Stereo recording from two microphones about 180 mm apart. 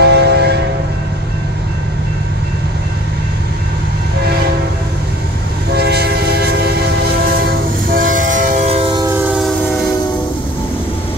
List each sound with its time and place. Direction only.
0.0 s train: 65° right (ahead or behind)
5.7 s train: 60° right (ahead or behind); by 8.9 s 35° right (ahead or behind)
8.9 s train: 15° right (ahead or behind)